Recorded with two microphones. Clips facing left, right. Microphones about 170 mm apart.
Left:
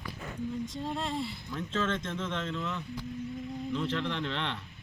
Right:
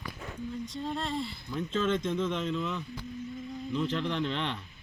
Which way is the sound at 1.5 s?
10° right (ahead or behind).